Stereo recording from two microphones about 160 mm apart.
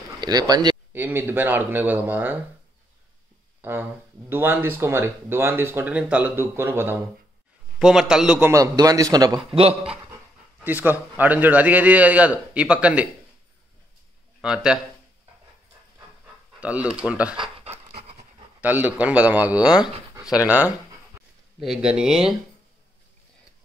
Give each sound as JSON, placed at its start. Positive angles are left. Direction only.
{"t": 0.2, "sound": "speech", "side_deg": -25}
{"t": 0.9, "sound": "speech", "side_deg": -10}
{"t": 3.6, "sound": "speech", "side_deg": -15}
{"t": 7.8, "sound": "speech", "side_deg": -5}
{"t": 8.5, "sound": "a man's voice", "side_deg": -20}
{"t": 10.6, "sound": "speech", "side_deg": -10}
{"t": 14.4, "sound": "speech", "side_deg": -5}
{"t": 16.5, "sound": "speech", "side_deg": -10}
{"t": 17.4, "sound": "pant", "side_deg": -35}
{"t": 18.6, "sound": "speech", "side_deg": -10}